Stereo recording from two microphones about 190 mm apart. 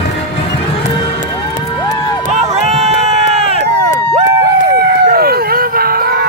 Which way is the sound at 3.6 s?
60° right (ahead or behind).